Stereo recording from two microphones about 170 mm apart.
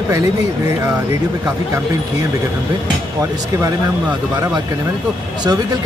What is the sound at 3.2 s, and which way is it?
Speech, 20° right (ahead or behind).